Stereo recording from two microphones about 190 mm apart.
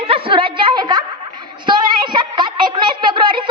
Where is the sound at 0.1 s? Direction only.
25° right (ahead or behind).